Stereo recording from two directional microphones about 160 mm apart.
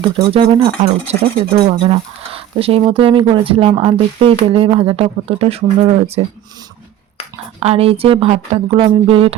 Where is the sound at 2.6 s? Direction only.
35° right (ahead or behind).